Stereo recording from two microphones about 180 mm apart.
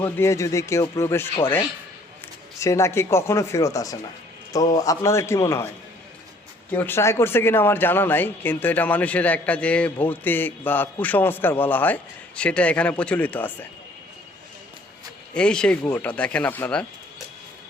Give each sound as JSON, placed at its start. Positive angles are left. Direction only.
{"t": 0.0, "sound": "speech", "side_deg": 15}
{"t": 2.6, "sound": "speech", "side_deg": 15}
{"t": 6.7, "sound": "speech", "side_deg": 10}
{"t": 15.3, "sound": "speech", "side_deg": 5}